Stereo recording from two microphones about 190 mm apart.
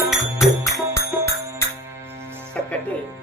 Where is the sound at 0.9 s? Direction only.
15° left (ahead or behind).